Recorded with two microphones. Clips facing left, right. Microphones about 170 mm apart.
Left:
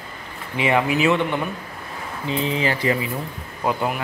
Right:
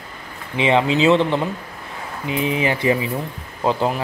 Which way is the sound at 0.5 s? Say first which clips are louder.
Right 3 dB; 20° right (ahead or behind).